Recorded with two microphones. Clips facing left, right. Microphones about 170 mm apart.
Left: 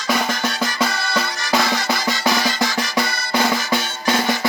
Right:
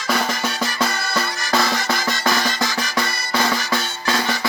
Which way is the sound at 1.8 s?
Centre (ahead or behind).